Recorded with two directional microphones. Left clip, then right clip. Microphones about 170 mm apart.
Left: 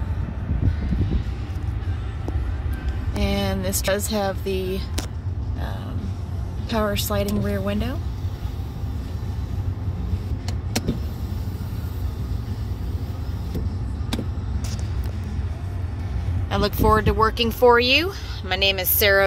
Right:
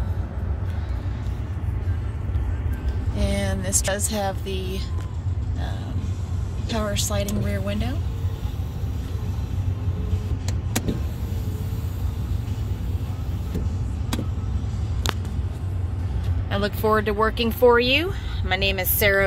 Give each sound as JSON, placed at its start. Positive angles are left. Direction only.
{"t": 3.2, "sound": "speech", "side_deg": 30}
{"t": 6.7, "sound": "a woman's voice", "side_deg": 45}
{"t": 16.4, "sound": "speech", "side_deg": 25}